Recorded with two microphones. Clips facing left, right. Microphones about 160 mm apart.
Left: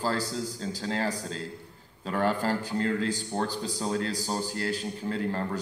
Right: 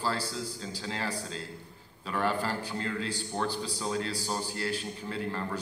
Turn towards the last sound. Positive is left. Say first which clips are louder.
# left 4 dB
turn(degrees=40)  # may be behind; listen again after turning